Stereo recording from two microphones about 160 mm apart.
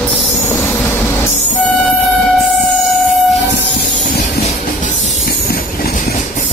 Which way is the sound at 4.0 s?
50° left (ahead or behind).